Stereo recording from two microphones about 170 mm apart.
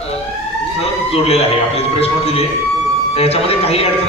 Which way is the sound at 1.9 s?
35° left (ahead or behind).